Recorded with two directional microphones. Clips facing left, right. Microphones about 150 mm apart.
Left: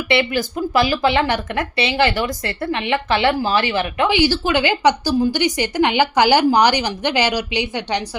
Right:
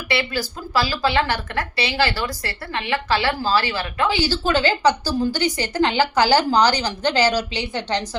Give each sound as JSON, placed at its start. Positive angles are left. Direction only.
{"t": 0.1, "sound": "speech", "side_deg": 20}